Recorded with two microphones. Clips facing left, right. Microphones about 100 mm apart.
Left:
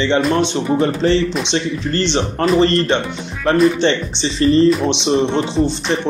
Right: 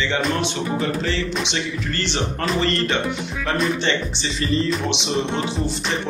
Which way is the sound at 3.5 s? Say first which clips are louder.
Left 9 dB; 35° left (ahead or behind).